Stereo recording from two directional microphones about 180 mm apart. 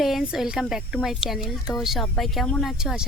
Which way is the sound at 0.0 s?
Centre (ahead or behind).